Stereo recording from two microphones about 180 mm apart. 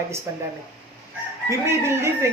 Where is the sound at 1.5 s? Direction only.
15° right (ahead or behind).